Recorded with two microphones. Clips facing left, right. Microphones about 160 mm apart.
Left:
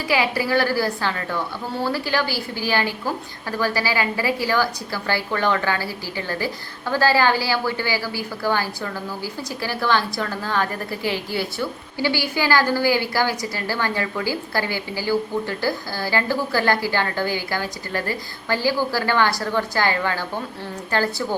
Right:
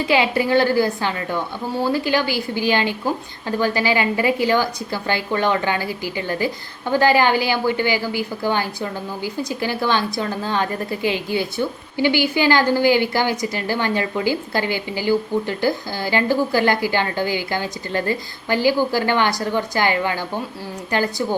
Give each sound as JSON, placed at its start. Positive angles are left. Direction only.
{"t": 0.0, "sound": "a woman's voice", "side_deg": -25}